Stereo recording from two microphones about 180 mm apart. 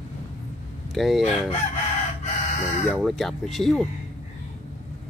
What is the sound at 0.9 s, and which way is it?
Chicken, centre (ahead or behind).